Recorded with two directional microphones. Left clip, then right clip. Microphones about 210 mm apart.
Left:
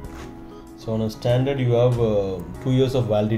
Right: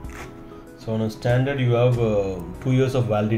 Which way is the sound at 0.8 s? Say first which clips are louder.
Left 1 dB; centre (ahead or behind).